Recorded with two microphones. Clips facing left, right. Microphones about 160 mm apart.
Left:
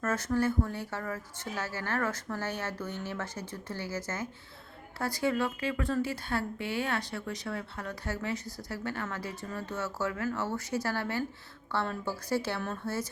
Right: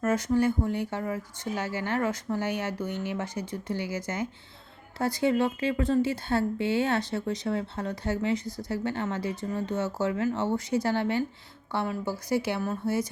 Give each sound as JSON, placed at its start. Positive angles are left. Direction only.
{"t": 0.0, "sound": "speech", "side_deg": -15}